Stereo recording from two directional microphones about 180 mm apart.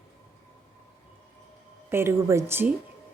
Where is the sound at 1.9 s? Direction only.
15° right (ahead or behind).